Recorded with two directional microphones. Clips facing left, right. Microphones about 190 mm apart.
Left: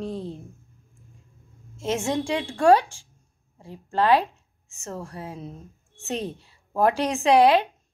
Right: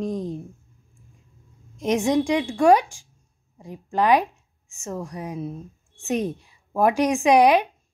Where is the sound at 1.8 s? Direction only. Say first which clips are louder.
Right 5 dB; 15° right (ahead or behind).